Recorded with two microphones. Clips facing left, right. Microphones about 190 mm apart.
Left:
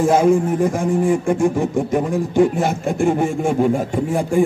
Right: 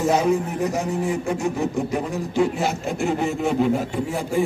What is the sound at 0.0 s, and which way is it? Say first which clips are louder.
Speech: left 5 dB; 50° left (ahead or behind).